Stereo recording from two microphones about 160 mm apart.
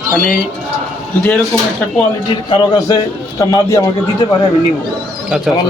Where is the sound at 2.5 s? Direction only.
25° left (ahead or behind).